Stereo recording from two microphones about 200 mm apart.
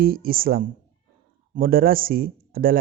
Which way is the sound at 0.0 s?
50° right (ahead or behind).